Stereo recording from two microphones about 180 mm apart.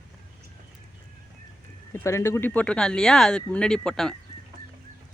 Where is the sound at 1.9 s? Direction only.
15° left (ahead or behind).